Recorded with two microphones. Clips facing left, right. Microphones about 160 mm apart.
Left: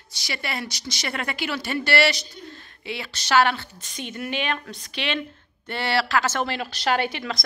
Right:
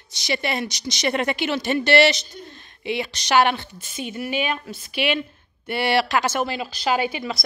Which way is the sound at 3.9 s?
5° right (ahead or behind).